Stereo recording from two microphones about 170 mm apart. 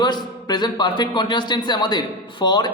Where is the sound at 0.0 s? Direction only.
25° left (ahead or behind).